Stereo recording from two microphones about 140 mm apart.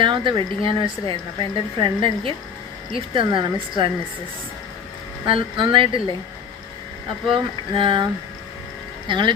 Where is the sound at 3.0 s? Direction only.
35° right (ahead or behind).